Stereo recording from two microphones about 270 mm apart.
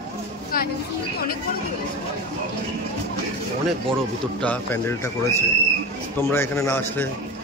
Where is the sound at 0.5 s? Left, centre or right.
Left.